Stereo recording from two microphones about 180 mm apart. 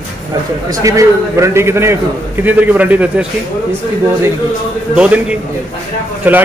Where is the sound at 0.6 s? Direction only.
20° right (ahead or behind).